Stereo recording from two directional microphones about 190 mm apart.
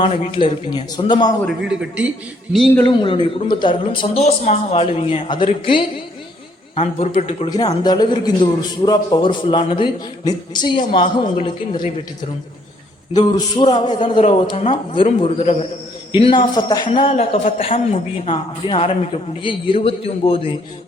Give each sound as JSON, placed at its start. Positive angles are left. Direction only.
{"t": 0.0, "sound": "a man's voice", "side_deg": 25}
{"t": 1.5, "sound": "a man's voice", "side_deg": -5}
{"t": 2.8, "sound": "a man's voice", "side_deg": 25}
{"t": 7.5, "sound": "a man's voice", "side_deg": 20}
{"t": 13.1, "sound": "a man's voice", "side_deg": 25}
{"t": 14.2, "sound": "a man's voice", "side_deg": 35}